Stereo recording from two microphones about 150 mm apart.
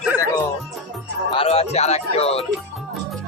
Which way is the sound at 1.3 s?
40° left (ahead or behind).